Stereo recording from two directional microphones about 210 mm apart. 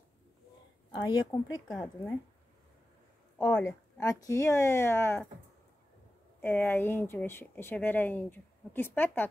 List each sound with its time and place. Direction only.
0.9 s a woman's voice: 20° left (ahead or behind)
1.7 s a woman's voice: centre (ahead or behind)
3.3 s speech: 10° left (ahead or behind)
6.4 s speech: 5° left (ahead or behind)